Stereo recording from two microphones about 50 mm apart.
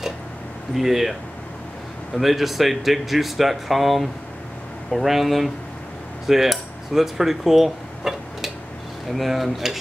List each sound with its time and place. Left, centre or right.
0.7 s speech: centre
2.1 s speech: centre
6.2 s cutlery: centre
9.1 s speech: centre